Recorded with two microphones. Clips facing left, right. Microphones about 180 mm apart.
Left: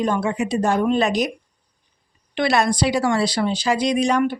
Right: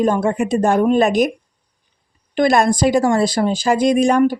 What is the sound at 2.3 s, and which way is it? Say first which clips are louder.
Speech: right 5 dB; 45° right (ahead or behind).